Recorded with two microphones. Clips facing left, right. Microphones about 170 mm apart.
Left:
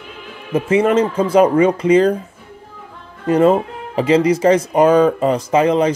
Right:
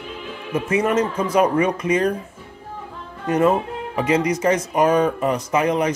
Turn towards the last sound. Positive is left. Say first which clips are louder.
# left 5 dB
turn(degrees=30)  # may be behind; listen again after turning